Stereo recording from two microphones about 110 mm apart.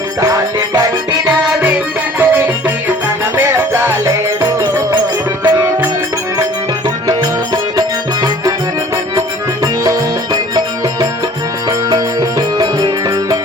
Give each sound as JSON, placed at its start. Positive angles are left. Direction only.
{"t": 0.2, "sound": "music", "side_deg": -35}
{"t": 2.1, "sound": "music", "side_deg": -20}
{"t": 7.1, "sound": "music", "side_deg": -35}
{"t": 11.9, "sound": "music", "side_deg": -40}